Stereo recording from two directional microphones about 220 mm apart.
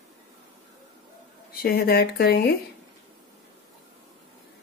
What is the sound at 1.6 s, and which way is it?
Speech, 45° left (ahead or behind).